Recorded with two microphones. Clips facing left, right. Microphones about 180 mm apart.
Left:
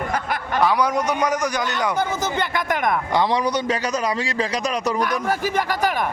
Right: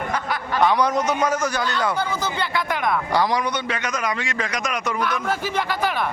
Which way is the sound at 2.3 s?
45° left (ahead or behind).